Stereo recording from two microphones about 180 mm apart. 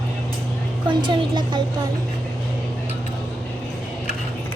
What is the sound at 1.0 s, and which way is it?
Speech, 25° right (ahead or behind).